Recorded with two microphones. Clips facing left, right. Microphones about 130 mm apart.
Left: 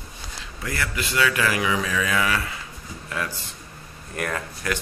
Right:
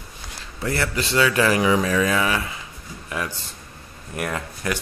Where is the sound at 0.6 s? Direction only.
30° right (ahead or behind).